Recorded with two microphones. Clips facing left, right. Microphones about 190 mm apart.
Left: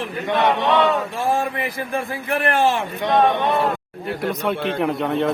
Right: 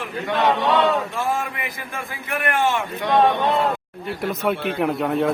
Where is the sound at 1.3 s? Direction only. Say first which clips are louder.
Left 5 dB; 35° left (ahead or behind).